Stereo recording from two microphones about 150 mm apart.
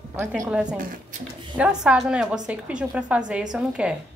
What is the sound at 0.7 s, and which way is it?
Speech, 65° right (ahead or behind).